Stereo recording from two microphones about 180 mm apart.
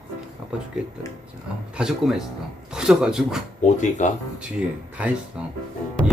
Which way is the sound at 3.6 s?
45° left (ahead or behind).